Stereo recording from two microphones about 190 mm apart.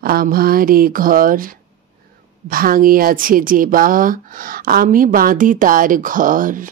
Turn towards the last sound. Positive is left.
turn(degrees=-45)  # may be behind; listen again after turning